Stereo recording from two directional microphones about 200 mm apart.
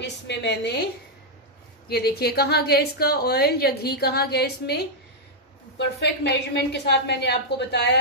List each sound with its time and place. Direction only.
0.0 s a woman's voice: 60° left (ahead or behind)
1.9 s a woman's voice: 55° left (ahead or behind)